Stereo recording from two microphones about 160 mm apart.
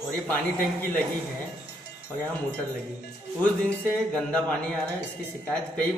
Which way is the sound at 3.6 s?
5° left (ahead or behind).